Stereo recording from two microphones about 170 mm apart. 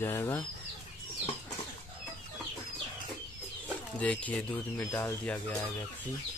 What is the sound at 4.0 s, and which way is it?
Chicken, 10° left (ahead or behind).